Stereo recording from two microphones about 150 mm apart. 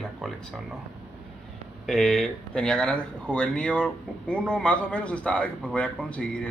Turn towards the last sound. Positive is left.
turn(degrees=10)  # may be behind; listen again after turning